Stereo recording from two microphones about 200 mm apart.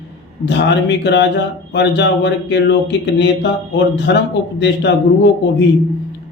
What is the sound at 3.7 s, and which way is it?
Speech, 60° left (ahead or behind).